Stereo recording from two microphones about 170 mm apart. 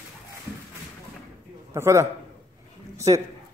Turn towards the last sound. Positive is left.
turn(degrees=-20)  # may be behind; listen again after turning